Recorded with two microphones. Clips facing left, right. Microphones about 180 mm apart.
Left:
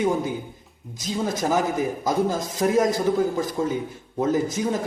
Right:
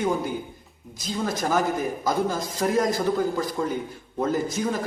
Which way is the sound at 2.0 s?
20° left (ahead or behind).